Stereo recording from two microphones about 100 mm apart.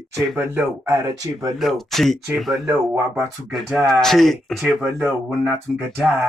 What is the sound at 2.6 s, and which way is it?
Speech, 25° right (ahead or behind).